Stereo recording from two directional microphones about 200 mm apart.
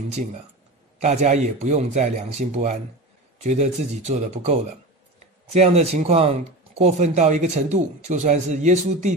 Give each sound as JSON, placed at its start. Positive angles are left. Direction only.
{"t": 0.9, "sound": "speech", "side_deg": -35}